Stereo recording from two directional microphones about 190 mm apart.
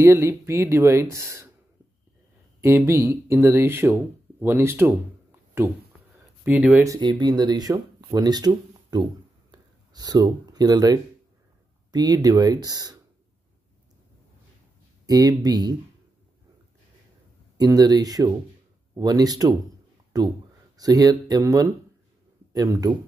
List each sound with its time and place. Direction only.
0.0 s speech: 15° right (ahead or behind)
2.6 s speech: 15° right (ahead or behind)
6.4 s speech: 10° right (ahead or behind)
9.5 s a sound: 20° right (ahead or behind)
11.9 s speech: 20° right (ahead or behind)
15.0 s speech: 20° right (ahead or behind)
17.6 s speech: 20° right (ahead or behind)